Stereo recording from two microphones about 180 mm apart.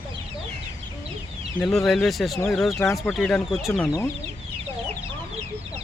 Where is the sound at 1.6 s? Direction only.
Centre (ahead or behind).